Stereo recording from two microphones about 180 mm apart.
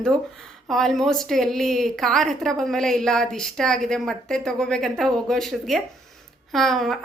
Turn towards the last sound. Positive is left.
turn(degrees=0)  # may be behind; listen again after turning